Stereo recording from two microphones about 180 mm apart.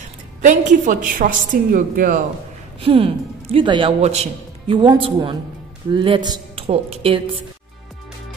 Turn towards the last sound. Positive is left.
turn(degrees=-30)  # may be behind; listen again after turning